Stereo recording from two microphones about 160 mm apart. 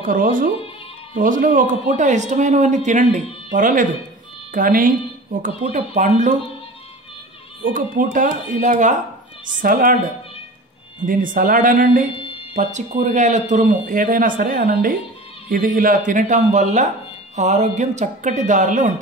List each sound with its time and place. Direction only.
0.0 s a man's voice: 60° right (ahead or behind)
7.6 s a man's voice: 60° right (ahead or behind)
9.6 s a man's voice: 60° right (ahead or behind)
11.1 s a man's voice: 60° right (ahead or behind)
12.5 s a man's voice: 50° right (ahead or behind)